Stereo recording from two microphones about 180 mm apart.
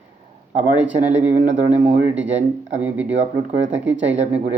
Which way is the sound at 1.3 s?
40° right (ahead or behind).